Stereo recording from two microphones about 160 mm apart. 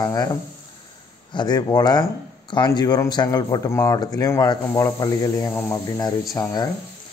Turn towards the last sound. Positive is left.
turn(degrees=25)  # may be behind; listen again after turning